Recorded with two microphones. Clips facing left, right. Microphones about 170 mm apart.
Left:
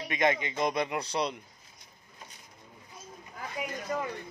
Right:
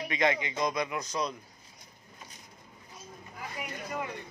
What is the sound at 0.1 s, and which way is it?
Speech, 20° left (ahead or behind).